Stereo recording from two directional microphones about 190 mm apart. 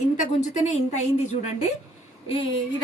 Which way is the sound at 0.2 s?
40° left (ahead or behind).